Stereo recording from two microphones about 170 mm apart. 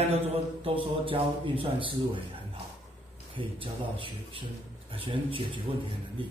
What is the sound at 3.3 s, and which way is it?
A man's voice, 30° right (ahead or behind).